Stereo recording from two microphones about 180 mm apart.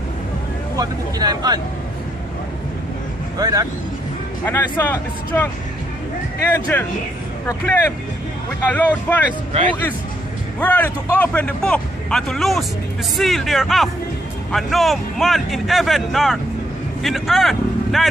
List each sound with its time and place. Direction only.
0.7 s speech: 20° right (ahead or behind)
3.3 s speech: 20° right (ahead or behind)
4.5 s speech: 10° left (ahead or behind)
6.5 s speech: 10° left (ahead or behind)
10.6 s a man's voice: 10° left (ahead or behind)